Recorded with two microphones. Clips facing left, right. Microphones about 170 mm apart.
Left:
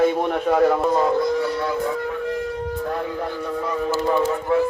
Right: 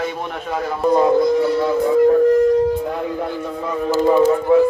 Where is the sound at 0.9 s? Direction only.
20° right (ahead or behind).